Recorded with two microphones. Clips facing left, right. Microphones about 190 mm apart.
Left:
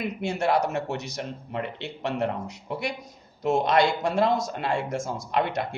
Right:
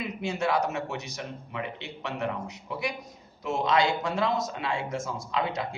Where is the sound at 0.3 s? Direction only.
55° left (ahead or behind).